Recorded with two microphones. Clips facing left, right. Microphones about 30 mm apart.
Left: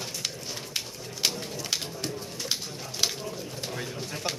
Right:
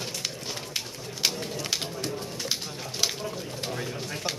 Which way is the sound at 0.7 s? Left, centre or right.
Centre.